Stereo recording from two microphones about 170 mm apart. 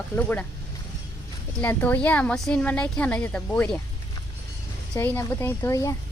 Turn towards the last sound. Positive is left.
turn(degrees=15)  # may be behind; listen again after turning